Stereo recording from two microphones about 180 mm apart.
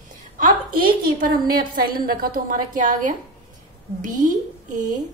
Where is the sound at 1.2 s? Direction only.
55° right (ahead or behind).